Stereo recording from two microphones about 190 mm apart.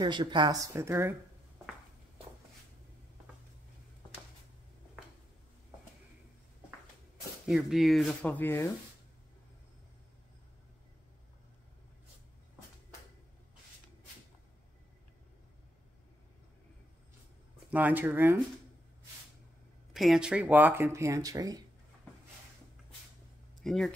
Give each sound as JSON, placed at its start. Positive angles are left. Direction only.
{"t": 0.0, "sound": "speech", "side_deg": -25}
{"t": 7.4, "sound": "speech", "side_deg": 0}
{"t": 17.6, "sound": "speech", "side_deg": -10}
{"t": 19.9, "sound": "speech", "side_deg": 0}
{"t": 23.6, "sound": "speech", "side_deg": 0}